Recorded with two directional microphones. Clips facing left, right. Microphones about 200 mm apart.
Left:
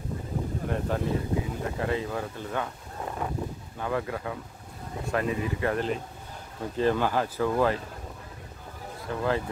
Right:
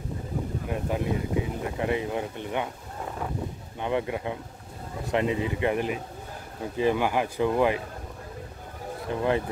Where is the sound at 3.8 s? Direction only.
20° right (ahead or behind).